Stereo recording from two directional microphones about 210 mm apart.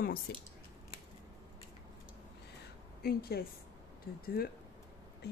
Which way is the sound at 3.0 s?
45° left (ahead or behind).